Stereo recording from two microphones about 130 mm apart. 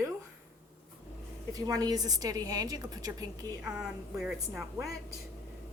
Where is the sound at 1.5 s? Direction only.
30° right (ahead or behind).